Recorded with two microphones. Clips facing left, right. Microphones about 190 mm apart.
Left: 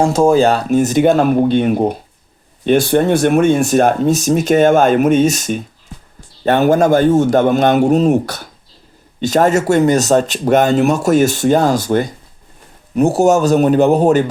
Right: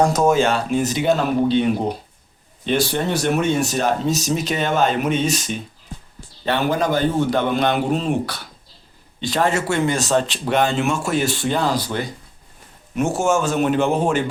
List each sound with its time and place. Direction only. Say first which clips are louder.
0.0 s speech: left 5 dB; 30° left (ahead or behind); by 12.0 s 45° left (ahead or behind)
13.0 s a man's voice: left 8 dB; 35° left (ahead or behind)